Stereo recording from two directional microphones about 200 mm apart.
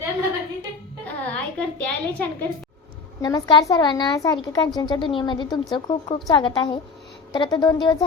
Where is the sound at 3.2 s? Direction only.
20° left (ahead or behind).